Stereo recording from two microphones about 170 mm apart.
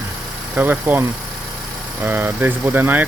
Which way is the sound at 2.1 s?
10° right (ahead or behind).